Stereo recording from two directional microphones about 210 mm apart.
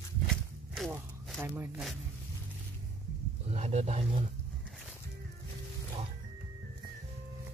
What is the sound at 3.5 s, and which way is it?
Speech, 30° right (ahead or behind).